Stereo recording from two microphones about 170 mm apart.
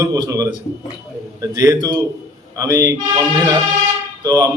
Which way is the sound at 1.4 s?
20° right (ahead or behind).